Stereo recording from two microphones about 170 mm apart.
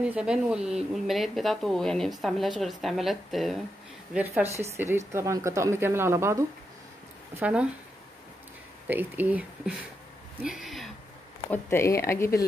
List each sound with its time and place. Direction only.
0.0 s speech: 5° right (ahead or behind)
4.1 s a woman's voice: 10° right (ahead or behind)
8.8 s a woman's voice: 10° right (ahead or behind)
11.5 s speech: 15° left (ahead or behind)